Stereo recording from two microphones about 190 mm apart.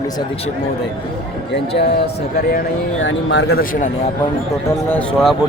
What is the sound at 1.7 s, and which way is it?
Speech, 60° left (ahead or behind).